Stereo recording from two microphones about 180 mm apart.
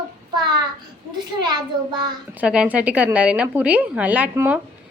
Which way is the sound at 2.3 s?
5° right (ahead or behind).